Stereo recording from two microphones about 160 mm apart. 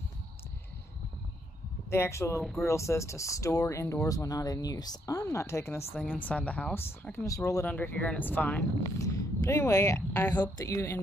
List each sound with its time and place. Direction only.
1.9 s speech: 15° left (ahead or behind)
7.6 s speech: 10° left (ahead or behind)
8.8 s a sound: 20° left (ahead or behind)
9.7 s speech: 20° left (ahead or behind)